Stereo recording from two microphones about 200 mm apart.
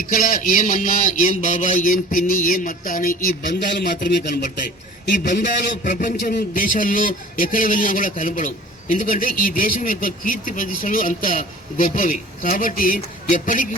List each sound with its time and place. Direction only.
0.0 s a man's voice: 45° left (ahead or behind)
5.8 s a man's voice: 40° left (ahead or behind)